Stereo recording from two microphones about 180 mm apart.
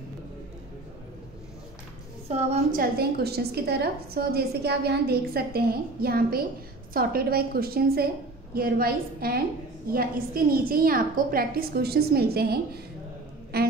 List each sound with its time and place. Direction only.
2.2 s a woman's voice: 35° right (ahead or behind)
2.8 s a woman's voice: 60° right (ahead or behind)